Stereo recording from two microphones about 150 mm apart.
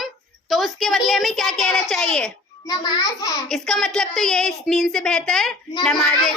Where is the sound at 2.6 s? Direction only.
25° left (ahead or behind).